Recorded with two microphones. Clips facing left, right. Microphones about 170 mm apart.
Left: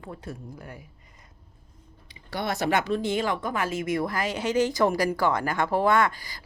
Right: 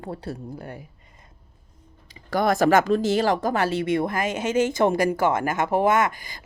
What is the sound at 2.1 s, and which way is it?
Speech, 45° right (ahead or behind).